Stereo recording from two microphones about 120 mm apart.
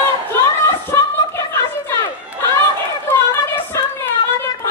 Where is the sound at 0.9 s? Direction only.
25° left (ahead or behind).